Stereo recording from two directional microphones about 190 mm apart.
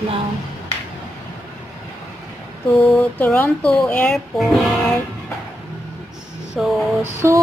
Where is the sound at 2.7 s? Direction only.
Centre (ahead or behind).